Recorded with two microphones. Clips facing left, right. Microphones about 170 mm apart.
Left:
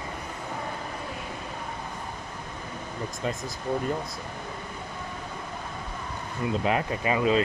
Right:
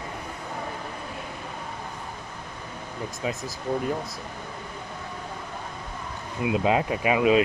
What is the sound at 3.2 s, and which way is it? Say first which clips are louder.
Speech: right 1 dB; 5° right (ahead or behind).